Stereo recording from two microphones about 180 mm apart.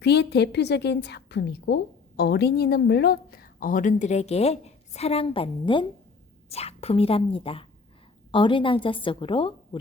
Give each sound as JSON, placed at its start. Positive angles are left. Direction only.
{"t": 0.0, "sound": "a woman's voice", "side_deg": 65}